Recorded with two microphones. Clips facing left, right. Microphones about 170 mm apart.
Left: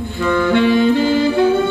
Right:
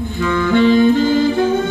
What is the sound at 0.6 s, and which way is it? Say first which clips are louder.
Music: right 4 dB; 45° right (ahead or behind).